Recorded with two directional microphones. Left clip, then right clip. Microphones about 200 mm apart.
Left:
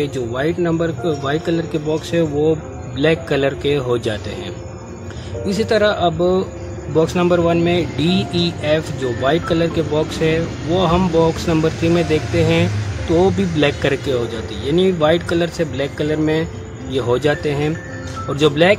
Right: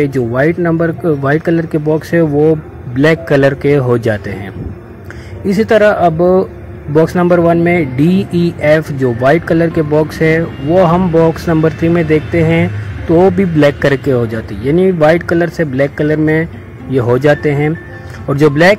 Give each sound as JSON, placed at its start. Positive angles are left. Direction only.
{"t": 0.0, "sound": "speech", "side_deg": -25}
{"t": 5.5, "sound": "speech", "side_deg": -25}
{"t": 8.0, "sound": "speech", "side_deg": -70}
{"t": 8.5, "sound": "speech", "side_deg": -25}